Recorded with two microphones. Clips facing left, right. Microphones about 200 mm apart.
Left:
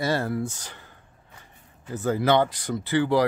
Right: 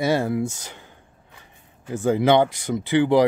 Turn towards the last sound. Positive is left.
turn(degrees=-15)  # may be behind; listen again after turning